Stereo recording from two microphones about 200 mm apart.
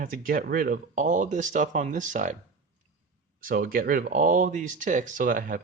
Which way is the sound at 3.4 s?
45° right (ahead or behind).